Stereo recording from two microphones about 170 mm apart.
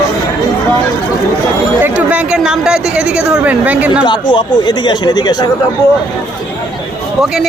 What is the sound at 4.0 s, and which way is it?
Speech, 25° left (ahead or behind).